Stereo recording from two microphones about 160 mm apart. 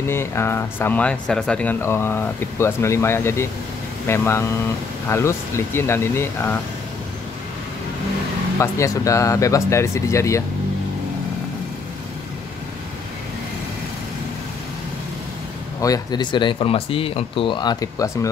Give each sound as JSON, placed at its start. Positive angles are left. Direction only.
{"t": 0.0, "sound": "speech", "side_deg": 15}
{"t": 8.5, "sound": "speech", "side_deg": 20}
{"t": 15.8, "sound": "speech", "side_deg": 25}